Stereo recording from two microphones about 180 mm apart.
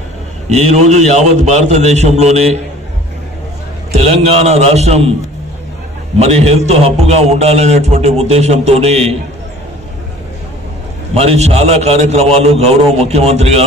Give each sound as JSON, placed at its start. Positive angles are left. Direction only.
{"t": 0.5, "sound": "a man's voice", "side_deg": -35}
{"t": 3.9, "sound": "a man's voice", "side_deg": -35}
{"t": 6.1, "sound": "a man's voice", "side_deg": -35}
{"t": 11.1, "sound": "a man's voice", "side_deg": -35}